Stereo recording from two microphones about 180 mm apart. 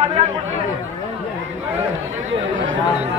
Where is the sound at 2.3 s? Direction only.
90° right.